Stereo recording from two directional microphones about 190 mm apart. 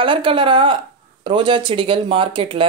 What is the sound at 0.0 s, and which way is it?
Speech, 25° right (ahead or behind).